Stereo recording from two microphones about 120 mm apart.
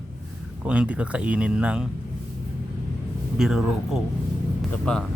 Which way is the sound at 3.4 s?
Centre (ahead or behind).